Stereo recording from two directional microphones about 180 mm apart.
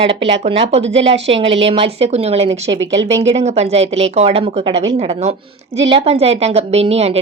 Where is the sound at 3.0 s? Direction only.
35° right (ahead or behind).